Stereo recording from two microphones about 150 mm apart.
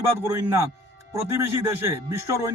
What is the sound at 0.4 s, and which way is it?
Speech, 20° right (ahead or behind).